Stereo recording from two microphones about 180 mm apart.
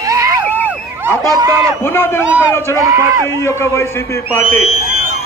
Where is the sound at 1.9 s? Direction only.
15° left (ahead or behind).